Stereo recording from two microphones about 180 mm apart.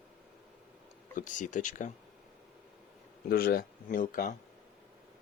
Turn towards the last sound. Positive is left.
turn(degrees=50)  # may be behind; listen again after turning